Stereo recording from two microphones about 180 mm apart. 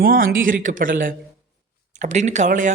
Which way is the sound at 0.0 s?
55° right (ahead or behind).